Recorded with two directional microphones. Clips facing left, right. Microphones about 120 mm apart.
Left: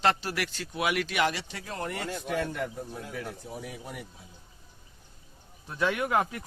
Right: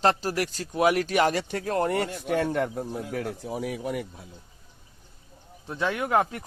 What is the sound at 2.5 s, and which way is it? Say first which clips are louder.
Speech: right 7 dB; 60° right (ahead or behind).